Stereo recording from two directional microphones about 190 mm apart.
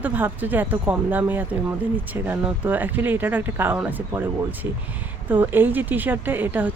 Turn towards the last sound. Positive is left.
turn(degrees=-10)  # may be behind; listen again after turning